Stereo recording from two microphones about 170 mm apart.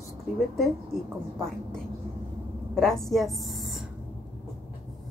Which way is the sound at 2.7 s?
Centre (ahead or behind).